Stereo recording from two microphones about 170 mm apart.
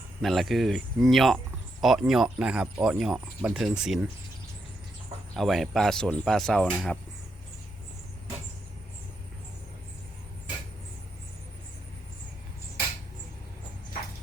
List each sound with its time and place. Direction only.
0.2 s speech: centre (ahead or behind)
5.3 s speech: centre (ahead or behind)